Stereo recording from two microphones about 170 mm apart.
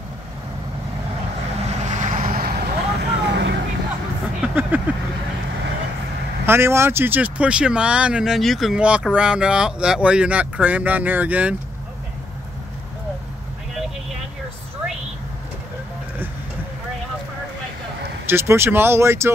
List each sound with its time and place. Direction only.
1.7 s vehicle: 45° right (ahead or behind); by 3.5 s 80° right
4.4 s vehicle: 10° right (ahead or behind)
6.4 s speech: 15° right (ahead or behind)
18.2 s speech: 15° right (ahead or behind)